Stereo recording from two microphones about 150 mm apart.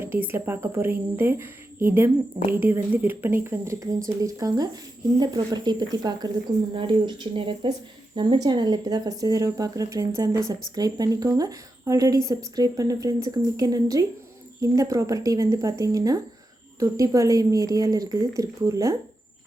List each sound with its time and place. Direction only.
0.0 s a woman's voice: 15° right (ahead or behind)